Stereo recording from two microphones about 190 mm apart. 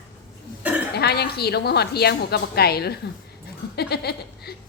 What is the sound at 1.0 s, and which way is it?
A woman's voice, 60° left (ahead or behind).